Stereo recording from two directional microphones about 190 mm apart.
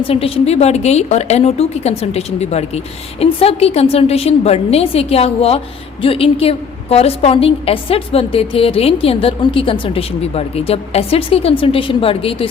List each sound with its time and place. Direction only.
0.1 s a woman's voice: 30° left (ahead or behind)